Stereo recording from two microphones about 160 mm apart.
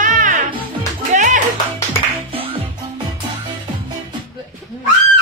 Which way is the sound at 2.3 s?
35° right (ahead or behind).